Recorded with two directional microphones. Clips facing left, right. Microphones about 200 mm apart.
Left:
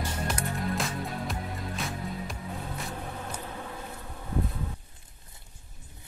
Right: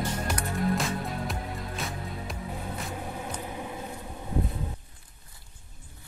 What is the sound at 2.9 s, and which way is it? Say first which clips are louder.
Music: right 2 dB; 15° right (ahead or behind).